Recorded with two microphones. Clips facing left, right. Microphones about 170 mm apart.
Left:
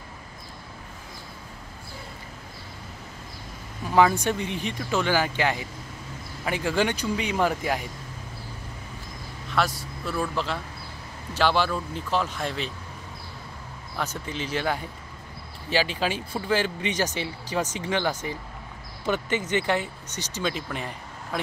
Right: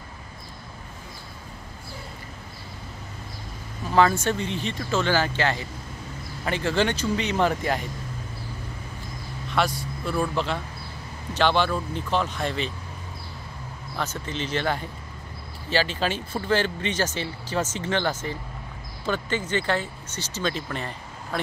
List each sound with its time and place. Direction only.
3.9 s speech: 15° left (ahead or behind)
9.5 s vehicle: centre (ahead or behind)
10.3 s speech: 5° left (ahead or behind)
13.9 s speech: 10° left (ahead or behind)